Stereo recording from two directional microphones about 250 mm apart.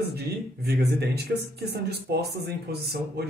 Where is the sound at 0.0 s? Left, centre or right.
Right.